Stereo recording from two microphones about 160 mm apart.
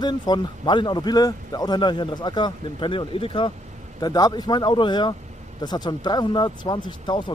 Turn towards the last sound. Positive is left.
turn(degrees=30)  # may be behind; listen again after turning